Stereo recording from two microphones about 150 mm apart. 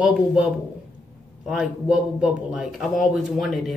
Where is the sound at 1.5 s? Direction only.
5° right (ahead or behind).